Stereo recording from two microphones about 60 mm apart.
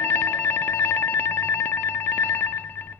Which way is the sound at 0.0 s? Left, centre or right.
Left.